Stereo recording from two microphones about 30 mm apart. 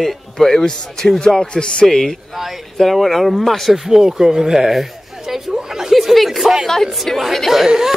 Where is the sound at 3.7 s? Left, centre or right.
Centre.